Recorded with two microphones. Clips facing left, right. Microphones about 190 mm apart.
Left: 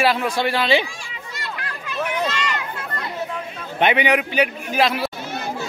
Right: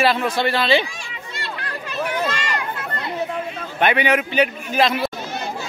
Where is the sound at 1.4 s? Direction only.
30° right (ahead or behind).